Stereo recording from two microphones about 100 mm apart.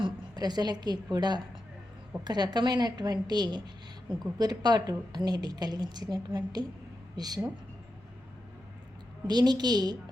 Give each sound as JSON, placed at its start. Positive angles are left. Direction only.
{"t": 0.0, "sound": "a woman's voice", "side_deg": -45}
{"t": 9.2, "sound": "a woman's voice", "side_deg": -45}